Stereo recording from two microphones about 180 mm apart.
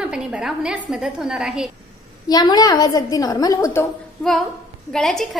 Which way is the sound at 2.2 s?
20° left (ahead or behind).